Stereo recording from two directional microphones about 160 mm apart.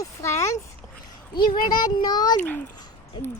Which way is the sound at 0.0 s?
20° left (ahead or behind).